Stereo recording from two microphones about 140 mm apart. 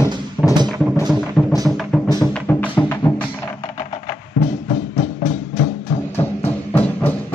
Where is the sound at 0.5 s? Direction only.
30° right (ahead or behind).